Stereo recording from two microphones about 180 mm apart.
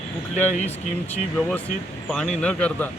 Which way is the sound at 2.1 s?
5° left (ahead or behind).